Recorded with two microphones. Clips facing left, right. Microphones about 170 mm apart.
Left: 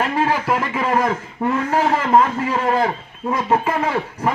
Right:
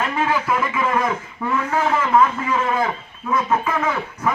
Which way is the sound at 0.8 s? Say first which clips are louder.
Left 2 dB; 35° left (ahead or behind).